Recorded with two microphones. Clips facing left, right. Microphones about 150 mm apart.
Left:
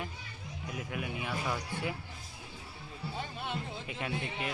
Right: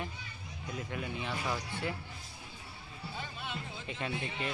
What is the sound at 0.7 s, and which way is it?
Speech, 5° left (ahead or behind).